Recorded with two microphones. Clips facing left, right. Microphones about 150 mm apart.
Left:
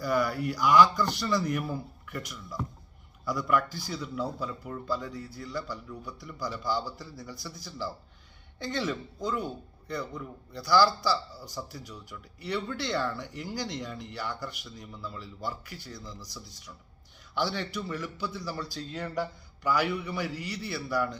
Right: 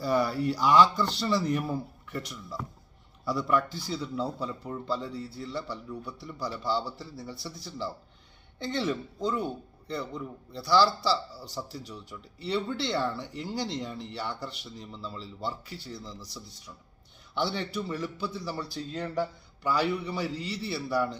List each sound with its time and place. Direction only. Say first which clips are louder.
0.0 s speech: right 2 dB; 30° right (ahead or behind)